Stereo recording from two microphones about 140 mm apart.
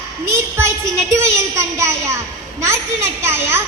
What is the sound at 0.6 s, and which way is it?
A woman's voice, 20° right (ahead or behind).